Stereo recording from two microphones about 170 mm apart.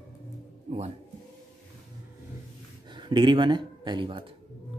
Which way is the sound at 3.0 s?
25° right (ahead or behind).